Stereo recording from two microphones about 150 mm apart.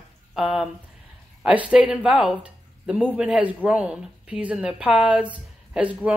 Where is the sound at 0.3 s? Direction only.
5° right (ahead or behind).